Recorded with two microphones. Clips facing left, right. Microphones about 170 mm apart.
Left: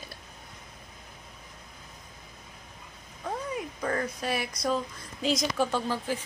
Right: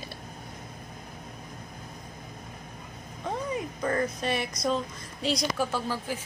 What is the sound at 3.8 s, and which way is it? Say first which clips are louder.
Speech: right 3 dB; centre (ahead or behind).